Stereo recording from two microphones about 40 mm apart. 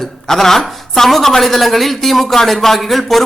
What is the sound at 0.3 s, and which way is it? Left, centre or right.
A woman's voice, centre.